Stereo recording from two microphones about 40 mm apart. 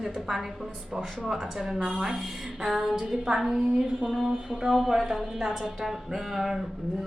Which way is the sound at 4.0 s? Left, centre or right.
Centre.